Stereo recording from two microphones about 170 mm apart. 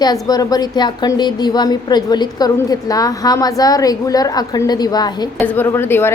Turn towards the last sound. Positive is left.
turn(degrees=15)  # may be behind; listen again after turning